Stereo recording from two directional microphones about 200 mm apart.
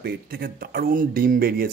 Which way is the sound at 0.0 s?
50° right (ahead or behind).